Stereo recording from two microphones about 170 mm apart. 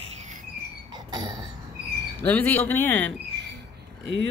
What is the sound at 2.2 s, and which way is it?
Speech, 10° left (ahead or behind).